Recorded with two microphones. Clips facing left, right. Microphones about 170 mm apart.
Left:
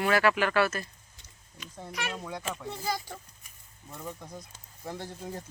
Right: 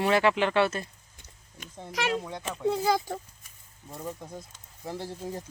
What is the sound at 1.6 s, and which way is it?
Speech, 50° right (ahead or behind).